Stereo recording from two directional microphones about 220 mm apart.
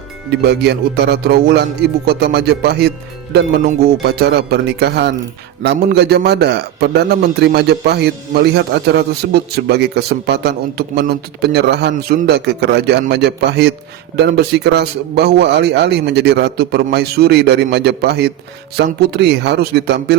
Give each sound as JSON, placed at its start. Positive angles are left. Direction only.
{"t": 0.3, "sound": "a man's voice", "side_deg": -50}
{"t": 4.0, "sound": "a man's voice", "side_deg": -50}